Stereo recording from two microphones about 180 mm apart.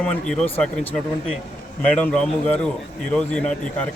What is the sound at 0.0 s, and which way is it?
Speech, 5° left (ahead or behind).